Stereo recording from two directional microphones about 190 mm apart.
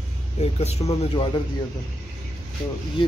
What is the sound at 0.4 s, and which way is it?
Speech, 35° left (ahead or behind).